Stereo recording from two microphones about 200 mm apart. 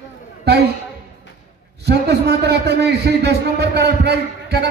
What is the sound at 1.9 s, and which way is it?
A man's voice, 55° right (ahead or behind).